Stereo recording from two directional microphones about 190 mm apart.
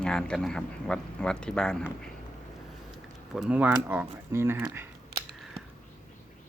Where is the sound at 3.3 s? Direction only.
5° right (ahead or behind).